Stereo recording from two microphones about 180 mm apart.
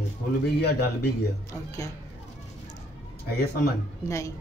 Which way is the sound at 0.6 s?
60° left (ahead or behind).